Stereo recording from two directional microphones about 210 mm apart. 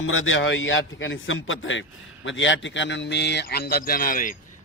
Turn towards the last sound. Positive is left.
turn(degrees=40)  # may be behind; listen again after turning